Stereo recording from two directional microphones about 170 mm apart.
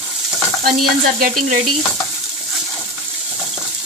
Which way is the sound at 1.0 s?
55° right (ahead or behind).